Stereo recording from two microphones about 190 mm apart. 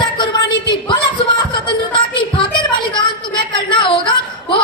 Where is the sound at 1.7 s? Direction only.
25° left (ahead or behind).